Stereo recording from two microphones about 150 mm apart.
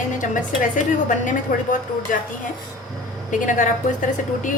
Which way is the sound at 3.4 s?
60° left (ahead or behind).